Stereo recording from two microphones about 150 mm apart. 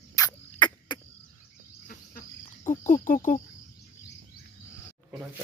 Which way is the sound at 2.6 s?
55° left (ahead or behind).